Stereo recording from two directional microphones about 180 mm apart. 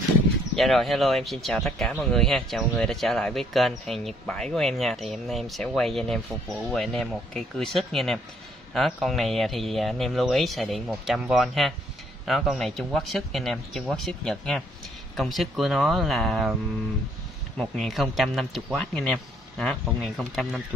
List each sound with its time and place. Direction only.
0.6 s speech: centre (ahead or behind)
17.6 s speech: centre (ahead or behind)